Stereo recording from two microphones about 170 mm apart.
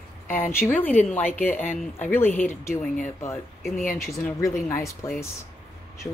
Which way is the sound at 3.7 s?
55° left (ahead or behind).